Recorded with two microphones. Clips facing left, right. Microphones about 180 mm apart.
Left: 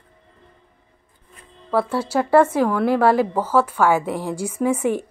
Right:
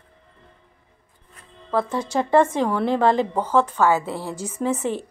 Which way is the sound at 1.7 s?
10° left (ahead or behind).